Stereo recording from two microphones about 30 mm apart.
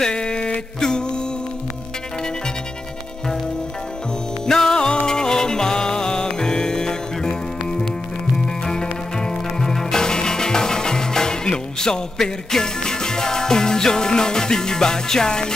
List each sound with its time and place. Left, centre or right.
0.0 s a sound: left
4.5 s music: centre
9.2 s music: centre